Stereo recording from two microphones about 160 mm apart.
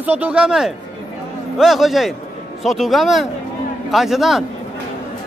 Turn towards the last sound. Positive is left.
turn(degrees=0)  # may be behind; listen again after turning